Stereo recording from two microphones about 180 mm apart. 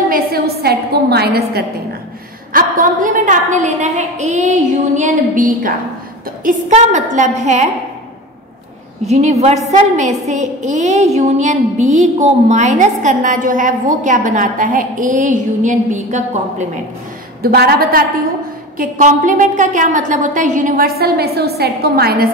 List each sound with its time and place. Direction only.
0.1 s a woman's voice: 60° right (ahead or behind)
2.5 s a woman's voice: 50° right (ahead or behind)
9.0 s a woman's voice: 35° right (ahead or behind)
17.4 s a woman's voice: 55° right (ahead or behind)
18.8 s a woman's voice: 45° right (ahead or behind)